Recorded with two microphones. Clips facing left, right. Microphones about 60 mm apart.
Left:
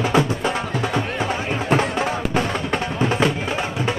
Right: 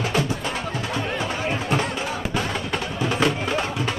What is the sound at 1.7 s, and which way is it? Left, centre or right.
Music, left.